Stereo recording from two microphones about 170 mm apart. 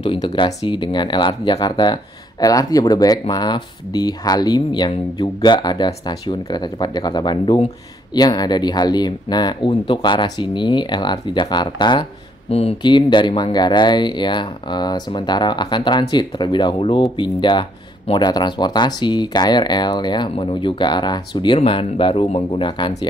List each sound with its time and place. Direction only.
0.0 s speech: 25° left (ahead or behind)